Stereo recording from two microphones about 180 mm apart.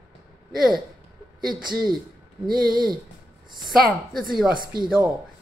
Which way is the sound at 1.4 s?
55° right (ahead or behind).